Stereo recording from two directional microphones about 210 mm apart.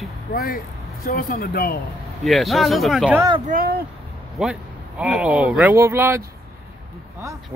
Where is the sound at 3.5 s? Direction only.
45° right (ahead or behind).